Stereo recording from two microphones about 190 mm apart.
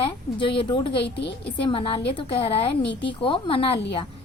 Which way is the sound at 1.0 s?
65° left (ahead or behind).